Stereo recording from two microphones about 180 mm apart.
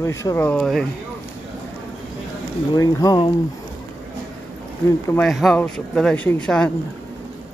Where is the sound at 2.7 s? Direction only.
20° left (ahead or behind).